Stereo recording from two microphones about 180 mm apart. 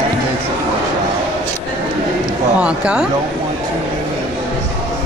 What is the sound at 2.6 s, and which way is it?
Speech, 5° right (ahead or behind).